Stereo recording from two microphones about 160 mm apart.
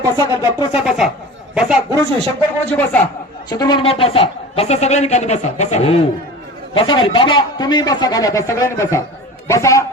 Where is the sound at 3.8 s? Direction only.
35° left (ahead or behind).